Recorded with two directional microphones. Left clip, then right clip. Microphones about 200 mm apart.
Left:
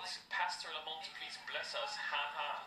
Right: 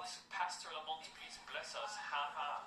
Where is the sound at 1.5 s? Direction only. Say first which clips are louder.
Left 4 dB; 35° left (ahead or behind).